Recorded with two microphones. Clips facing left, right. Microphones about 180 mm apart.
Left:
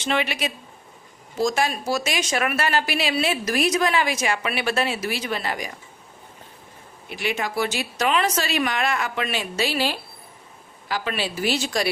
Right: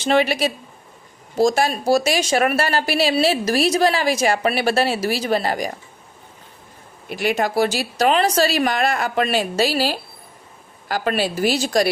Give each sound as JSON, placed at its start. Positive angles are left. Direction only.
{"t": 0.0, "sound": "speech", "side_deg": -35}
{"t": 7.1, "sound": "speech", "side_deg": -40}